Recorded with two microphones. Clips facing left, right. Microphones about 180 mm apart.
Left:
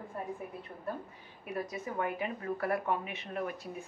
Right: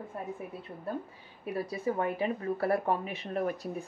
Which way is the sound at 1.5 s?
30° right (ahead or behind).